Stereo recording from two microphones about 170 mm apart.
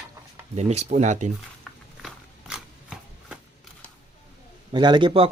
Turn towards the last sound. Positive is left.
turn(degrees=-30)  # may be behind; listen again after turning